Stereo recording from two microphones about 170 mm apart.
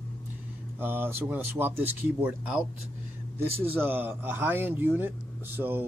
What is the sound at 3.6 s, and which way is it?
Speech, 10° right (ahead or behind).